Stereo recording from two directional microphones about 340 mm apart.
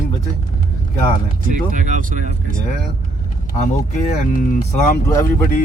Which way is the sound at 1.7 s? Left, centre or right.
Right.